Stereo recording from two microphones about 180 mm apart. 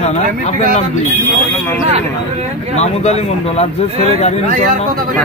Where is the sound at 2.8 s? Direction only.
35° left (ahead or behind).